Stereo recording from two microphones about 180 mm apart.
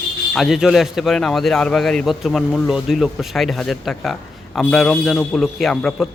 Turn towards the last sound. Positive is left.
turn(degrees=5)  # may be behind; listen again after turning